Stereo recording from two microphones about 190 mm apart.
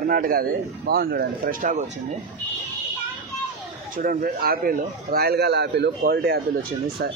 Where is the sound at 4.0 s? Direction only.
50° right (ahead or behind).